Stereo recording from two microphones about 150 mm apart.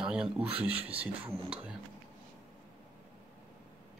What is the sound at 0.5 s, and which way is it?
Speech, 40° right (ahead or behind).